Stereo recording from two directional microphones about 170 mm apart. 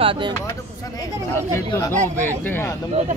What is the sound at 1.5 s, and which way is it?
Speech, 15° left (ahead or behind).